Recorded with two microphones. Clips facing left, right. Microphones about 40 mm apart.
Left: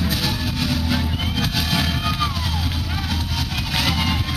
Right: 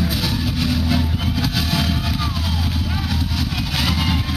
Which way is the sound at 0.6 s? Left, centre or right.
Centre.